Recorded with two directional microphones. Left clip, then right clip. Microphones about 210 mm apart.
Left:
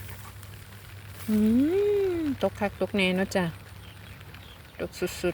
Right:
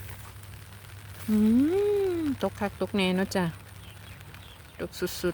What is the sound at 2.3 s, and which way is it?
Speech, 15° right (ahead or behind).